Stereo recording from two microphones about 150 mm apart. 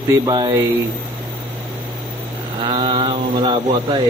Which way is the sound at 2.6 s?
30° right (ahead or behind).